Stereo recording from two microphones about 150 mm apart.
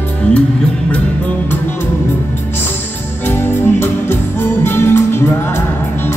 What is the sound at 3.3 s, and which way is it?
Music, 15° left (ahead or behind).